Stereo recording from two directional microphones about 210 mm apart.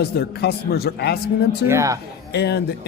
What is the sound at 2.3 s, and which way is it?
Speech, 50° left (ahead or behind).